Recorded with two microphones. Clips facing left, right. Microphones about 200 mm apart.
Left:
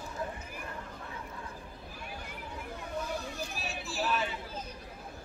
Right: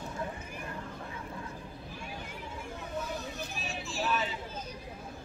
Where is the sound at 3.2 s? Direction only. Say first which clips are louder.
Even; centre (ahead or behind).